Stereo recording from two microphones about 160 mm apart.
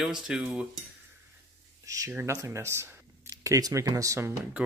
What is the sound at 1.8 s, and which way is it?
Speech, 20° right (ahead or behind).